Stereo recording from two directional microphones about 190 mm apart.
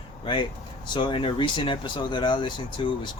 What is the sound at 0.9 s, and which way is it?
Speech, 25° left (ahead or behind).